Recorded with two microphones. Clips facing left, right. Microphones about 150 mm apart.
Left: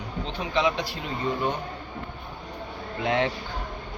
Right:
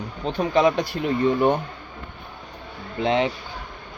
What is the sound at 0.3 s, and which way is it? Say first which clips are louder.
Speech: right 7 dB; 45° right (ahead or behind).